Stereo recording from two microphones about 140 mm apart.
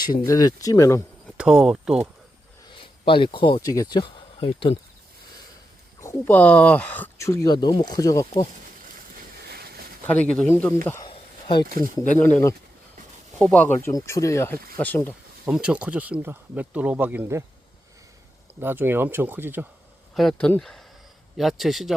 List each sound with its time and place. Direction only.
0.2 s speech: 25° left (ahead or behind)
1.4 s a man's voice: 5° right (ahead or behind)
2.6 s speech: 40° left (ahead or behind)
6.0 s speech: 20° left (ahead or behind)
9.6 s a sound: 90° right
10.1 s speech: 10° left (ahead or behind)
11.0 s a sound: 30° left (ahead or behind)
12.1 s speech: 15° left (ahead or behind)
15.4 s speech: 10° right (ahead or behind)
18.6 s speech: 15° right (ahead or behind)
20.1 s a man's voice: centre (ahead or behind)